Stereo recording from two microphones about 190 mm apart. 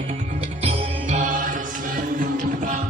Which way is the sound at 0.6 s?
35° right (ahead or behind).